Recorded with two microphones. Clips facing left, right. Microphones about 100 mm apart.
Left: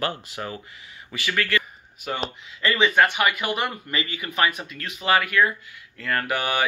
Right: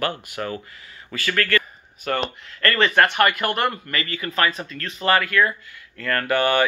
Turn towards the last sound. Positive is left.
turn(degrees=10)  # may be behind; listen again after turning